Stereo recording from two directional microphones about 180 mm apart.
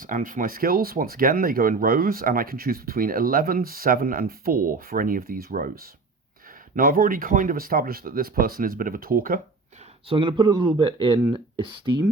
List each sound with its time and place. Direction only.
0.0 s speech: 50° right (ahead or behind)
10.1 s speech: 25° right (ahead or behind)